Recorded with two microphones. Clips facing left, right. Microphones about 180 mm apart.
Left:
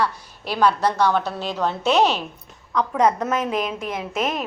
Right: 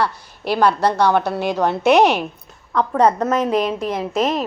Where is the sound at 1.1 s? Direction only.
65° right (ahead or behind).